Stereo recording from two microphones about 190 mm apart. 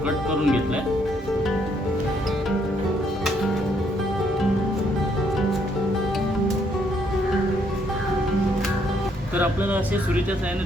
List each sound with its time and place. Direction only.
0.3 s speech: 5° right (ahead or behind)